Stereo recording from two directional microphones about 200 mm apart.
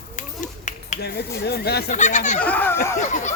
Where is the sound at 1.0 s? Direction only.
55° left (ahead or behind).